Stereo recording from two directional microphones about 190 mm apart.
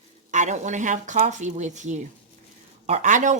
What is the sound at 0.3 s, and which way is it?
Speech, 40° right (ahead or behind).